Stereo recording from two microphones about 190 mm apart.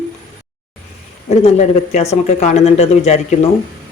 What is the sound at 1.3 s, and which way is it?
Speech, 35° left (ahead or behind).